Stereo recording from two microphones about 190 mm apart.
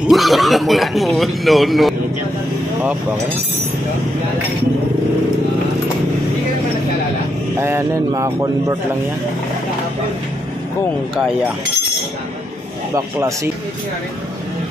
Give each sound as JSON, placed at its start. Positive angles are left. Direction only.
{"t": 0.0, "sound": "speech", "side_deg": 0}
{"t": 7.5, "sound": "speech", "side_deg": -15}
{"t": 11.1, "sound": "speech", "side_deg": -5}
{"t": 12.9, "sound": "speech", "side_deg": -15}